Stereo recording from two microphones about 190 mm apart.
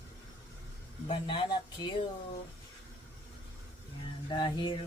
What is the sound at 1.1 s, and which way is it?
Mantra, 25° left (ahead or behind).